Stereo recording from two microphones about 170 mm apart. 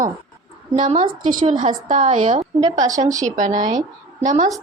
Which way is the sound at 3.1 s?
45° right (ahead or behind).